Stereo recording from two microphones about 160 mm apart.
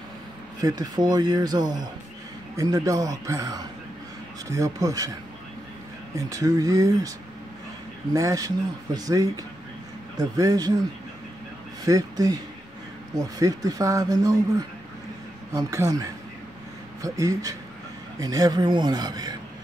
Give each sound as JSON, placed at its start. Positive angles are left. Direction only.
{"t": 0.6, "sound": "speech", "side_deg": -25}
{"t": 6.1, "sound": "speech", "side_deg": -20}
{"t": 11.8, "sound": "speech", "side_deg": -20}
{"t": 13.4, "sound": "speech", "side_deg": -20}
{"t": 15.5, "sound": "speech", "side_deg": -20}